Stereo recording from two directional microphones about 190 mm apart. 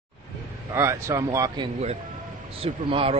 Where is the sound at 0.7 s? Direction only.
15° right (ahead or behind).